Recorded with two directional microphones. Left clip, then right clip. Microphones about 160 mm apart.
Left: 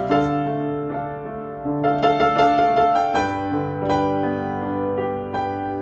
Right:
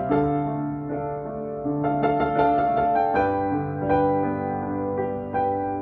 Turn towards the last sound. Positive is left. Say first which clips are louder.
# even
turn(degrees=20)  # may be behind; listen again after turning